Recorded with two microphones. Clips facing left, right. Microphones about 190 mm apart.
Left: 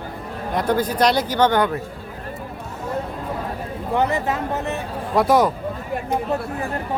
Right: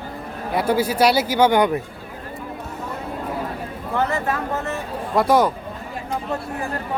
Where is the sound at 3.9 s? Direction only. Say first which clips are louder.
Left 1 dB; 20° left (ahead or behind).